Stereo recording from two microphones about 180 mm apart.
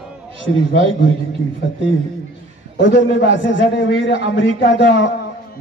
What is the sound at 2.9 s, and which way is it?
Speech, 55° left (ahead or behind).